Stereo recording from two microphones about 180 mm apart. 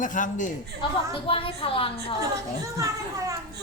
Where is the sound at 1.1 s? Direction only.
30° left (ahead or behind).